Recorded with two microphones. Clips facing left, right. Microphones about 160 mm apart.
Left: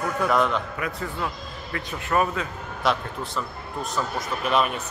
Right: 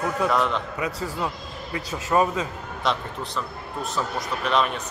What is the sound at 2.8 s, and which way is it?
A man's voice, 5° left (ahead or behind).